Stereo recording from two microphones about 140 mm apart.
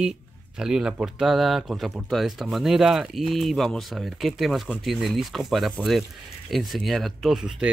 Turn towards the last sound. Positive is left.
turn(degrees=-5)  # may be behind; listen again after turning